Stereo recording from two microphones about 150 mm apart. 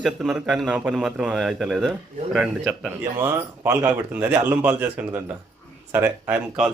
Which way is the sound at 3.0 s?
15° right (ahead or behind).